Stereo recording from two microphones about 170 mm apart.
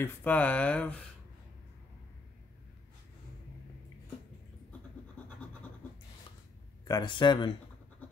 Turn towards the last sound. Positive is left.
turn(degrees=25)  # may be behind; listen again after turning